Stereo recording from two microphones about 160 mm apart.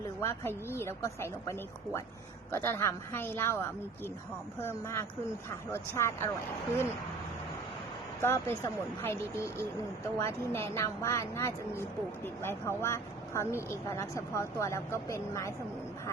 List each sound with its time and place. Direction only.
0.2 s a woman's voice: 15° left (ahead or behind)
8.2 s a woman's voice: 15° left (ahead or behind)